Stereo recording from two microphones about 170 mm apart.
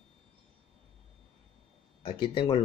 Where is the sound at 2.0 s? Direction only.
30° left (ahead or behind).